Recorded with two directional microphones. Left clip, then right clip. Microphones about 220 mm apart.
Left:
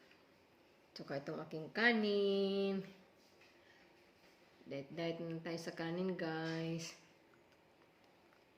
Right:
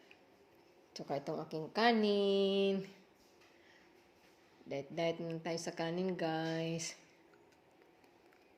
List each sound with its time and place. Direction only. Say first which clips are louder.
0.9 s speech: right 5 dB; 20° right (ahead or behind)
4.7 s speech: right 6 dB; 25° right (ahead or behind)